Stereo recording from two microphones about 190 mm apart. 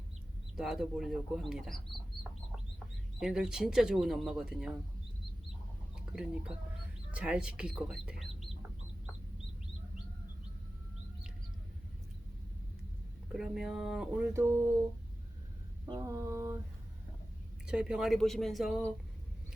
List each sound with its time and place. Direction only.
0.5 s speech: centre (ahead or behind)
3.2 s speech: 5° right (ahead or behind)
7.1 s speech: 5° right (ahead or behind)
13.3 s speech: 5° right (ahead or behind)
15.9 s mantra: 15° right (ahead or behind)
17.7 s speech: 5° right (ahead or behind)